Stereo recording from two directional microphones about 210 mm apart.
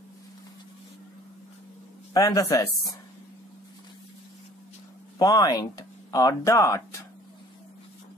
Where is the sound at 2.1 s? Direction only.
15° left (ahead or behind).